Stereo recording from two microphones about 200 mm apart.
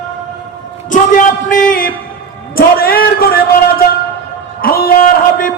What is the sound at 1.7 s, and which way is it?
A man's voice, 45° left (ahead or behind).